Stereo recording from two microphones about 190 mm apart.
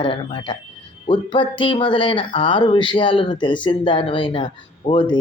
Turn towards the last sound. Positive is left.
turn(degrees=25)  # may be behind; listen again after turning